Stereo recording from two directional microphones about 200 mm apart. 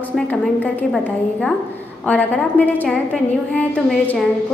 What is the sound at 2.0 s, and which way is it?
A woman's voice, 10° left (ahead or behind).